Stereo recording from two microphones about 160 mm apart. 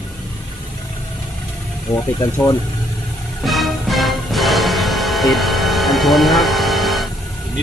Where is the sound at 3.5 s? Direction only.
Centre (ahead or behind).